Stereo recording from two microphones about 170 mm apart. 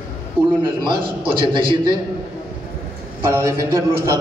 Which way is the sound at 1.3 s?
30° right (ahead or behind).